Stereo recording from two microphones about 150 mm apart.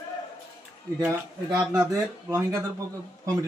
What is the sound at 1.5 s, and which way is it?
A man's voice, 25° right (ahead or behind).